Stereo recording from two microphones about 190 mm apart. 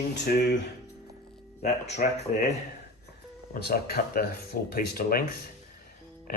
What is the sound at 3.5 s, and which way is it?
Speech, 55° left (ahead or behind).